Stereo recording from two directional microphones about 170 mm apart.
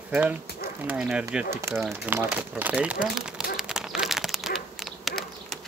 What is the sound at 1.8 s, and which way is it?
Crumpling, 10° right (ahead or behind).